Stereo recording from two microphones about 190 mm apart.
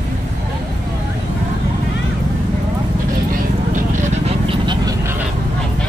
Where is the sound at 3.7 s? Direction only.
35° right (ahead or behind).